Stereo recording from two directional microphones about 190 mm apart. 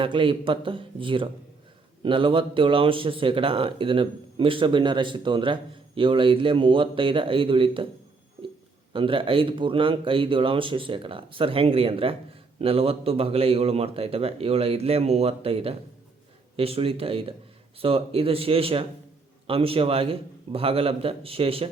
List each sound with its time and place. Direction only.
0.0 s speech: 25° right (ahead or behind)
8.9 s a man's voice: 25° right (ahead or behind)